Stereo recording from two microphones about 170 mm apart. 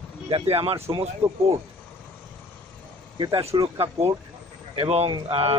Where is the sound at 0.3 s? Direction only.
35° right (ahead or behind).